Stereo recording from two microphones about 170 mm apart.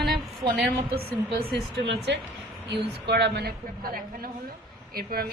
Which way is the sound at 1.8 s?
90° right.